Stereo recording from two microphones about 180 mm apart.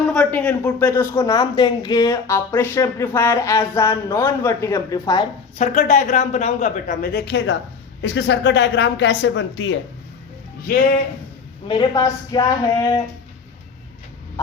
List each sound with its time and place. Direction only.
0.1 s speech: 10° left (ahead or behind)
5.5 s speech: 40° left (ahead or behind); by 7.5 s 75° left (ahead or behind)
8.0 s speech: 85° left
11.7 s a woman's voice: 20° left (ahead or behind)